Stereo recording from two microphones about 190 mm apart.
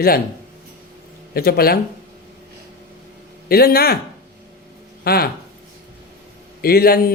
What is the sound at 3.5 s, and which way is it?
Speech, 55° left (ahead or behind).